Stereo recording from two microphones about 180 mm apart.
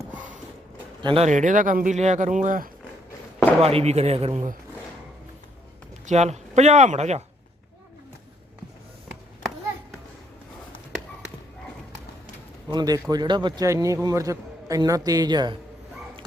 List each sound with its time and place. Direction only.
1.0 s speech: 35° right (ahead or behind)
3.6 s speech: 35° right (ahead or behind)
6.1 s speech: 40° right (ahead or behind)
12.7 s a man's voice: 20° right (ahead or behind)